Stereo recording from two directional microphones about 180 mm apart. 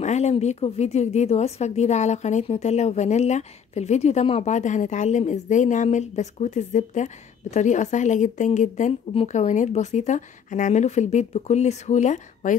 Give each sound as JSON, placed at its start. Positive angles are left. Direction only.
{"t": 0.0, "sound": "a woman's voice", "side_deg": 40}